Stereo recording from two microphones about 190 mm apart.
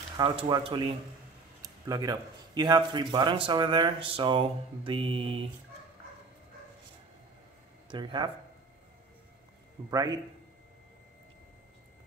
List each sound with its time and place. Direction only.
0.2 s speech: 25° right (ahead or behind)
7.9 s speech: 25° right (ahead or behind)
9.8 s speech: 20° right (ahead or behind)